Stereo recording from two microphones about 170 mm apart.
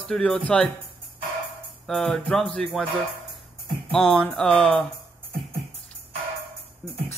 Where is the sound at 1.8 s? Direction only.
5° left (ahead or behind).